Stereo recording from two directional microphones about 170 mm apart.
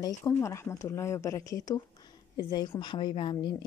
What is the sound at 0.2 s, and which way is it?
A woman's voice, 15° left (ahead or behind).